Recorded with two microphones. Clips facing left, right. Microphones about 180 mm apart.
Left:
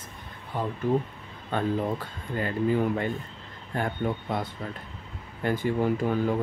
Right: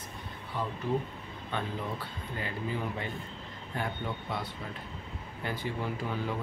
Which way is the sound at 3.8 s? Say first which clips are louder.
Left 7 dB; 50° left (ahead or behind).